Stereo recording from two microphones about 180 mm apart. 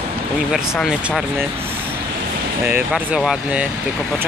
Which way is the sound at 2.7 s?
5° right (ahead or behind).